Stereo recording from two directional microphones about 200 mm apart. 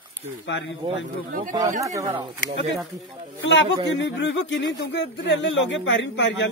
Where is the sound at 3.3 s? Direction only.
65° left (ahead or behind).